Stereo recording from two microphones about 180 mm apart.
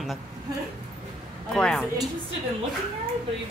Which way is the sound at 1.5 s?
Centre (ahead or behind).